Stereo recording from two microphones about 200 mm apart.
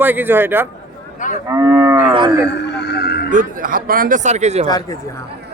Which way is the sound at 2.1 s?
25° right (ahead or behind).